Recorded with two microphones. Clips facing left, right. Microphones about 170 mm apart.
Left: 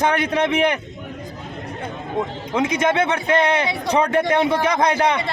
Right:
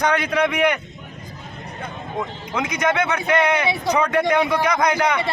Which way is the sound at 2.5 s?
25° left (ahead or behind).